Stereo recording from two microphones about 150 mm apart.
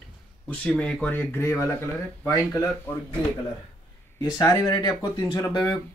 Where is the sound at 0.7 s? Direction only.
5° left (ahead or behind); by 3.0 s 20° left (ahead or behind).